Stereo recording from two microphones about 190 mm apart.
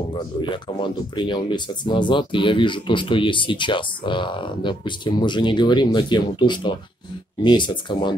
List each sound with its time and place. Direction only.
0.1 s speech: 25° left (ahead or behind)